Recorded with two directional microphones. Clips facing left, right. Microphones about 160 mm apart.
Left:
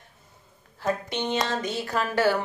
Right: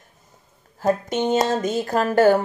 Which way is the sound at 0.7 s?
45° right (ahead or behind).